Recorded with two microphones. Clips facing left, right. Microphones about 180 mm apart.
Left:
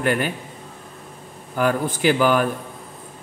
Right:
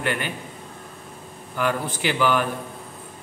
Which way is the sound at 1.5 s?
45° left (ahead or behind).